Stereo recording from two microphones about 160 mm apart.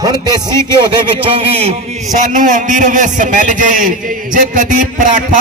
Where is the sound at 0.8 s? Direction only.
35° right (ahead or behind).